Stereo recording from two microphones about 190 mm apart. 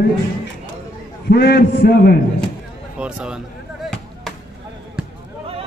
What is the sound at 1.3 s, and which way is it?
Speech, 60° left (ahead or behind).